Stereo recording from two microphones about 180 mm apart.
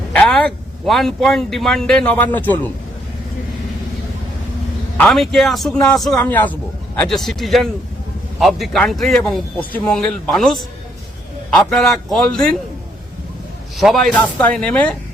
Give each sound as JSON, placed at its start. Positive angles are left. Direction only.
{"t": 0.1, "sound": "speech", "side_deg": 5}
{"t": 4.9, "sound": "speech", "side_deg": 5}
{"t": 13.7, "sound": "speech", "side_deg": 0}